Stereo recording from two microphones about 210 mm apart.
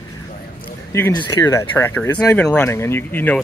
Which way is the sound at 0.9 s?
10° left (ahead or behind).